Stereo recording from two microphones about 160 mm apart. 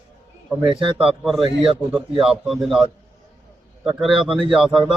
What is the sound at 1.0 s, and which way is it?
A man's voice, centre (ahead or behind).